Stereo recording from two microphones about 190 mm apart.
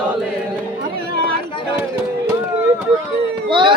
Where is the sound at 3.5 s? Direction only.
25° right (ahead or behind).